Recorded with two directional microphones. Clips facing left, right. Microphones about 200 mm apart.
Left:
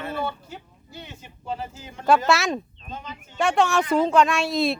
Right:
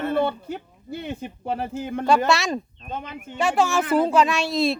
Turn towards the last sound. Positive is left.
turn(degrees=0)  # may be behind; listen again after turning